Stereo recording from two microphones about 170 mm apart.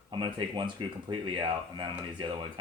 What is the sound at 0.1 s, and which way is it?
Speech, 25° right (ahead or behind).